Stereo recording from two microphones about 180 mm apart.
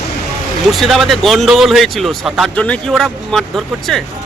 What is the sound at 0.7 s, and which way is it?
Speech, centre (ahead or behind).